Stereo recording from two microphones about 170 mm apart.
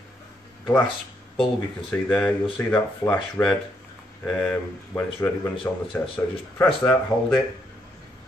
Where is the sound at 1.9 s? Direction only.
5° left (ahead or behind).